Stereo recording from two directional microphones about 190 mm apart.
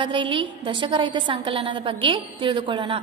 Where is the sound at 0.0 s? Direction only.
25° right (ahead or behind).